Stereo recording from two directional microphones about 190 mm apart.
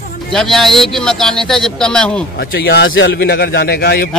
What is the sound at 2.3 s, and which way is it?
A man's voice, 55° left (ahead or behind).